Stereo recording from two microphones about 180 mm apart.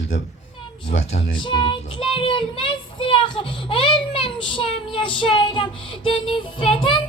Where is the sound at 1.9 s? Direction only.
30° left (ahead or behind).